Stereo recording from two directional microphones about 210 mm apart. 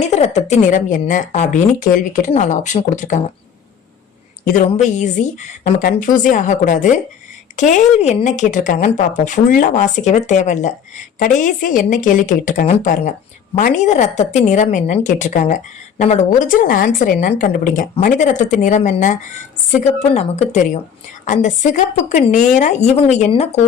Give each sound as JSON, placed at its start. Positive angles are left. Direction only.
{"t": 0.0, "sound": "a woman's voice", "side_deg": 30}
{"t": 4.4, "sound": "a woman's voice", "side_deg": 40}